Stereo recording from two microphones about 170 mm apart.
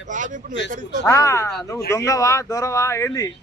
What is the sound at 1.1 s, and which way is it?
Speech, 20° left (ahead or behind).